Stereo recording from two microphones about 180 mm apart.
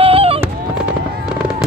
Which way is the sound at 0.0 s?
35° right (ahead or behind).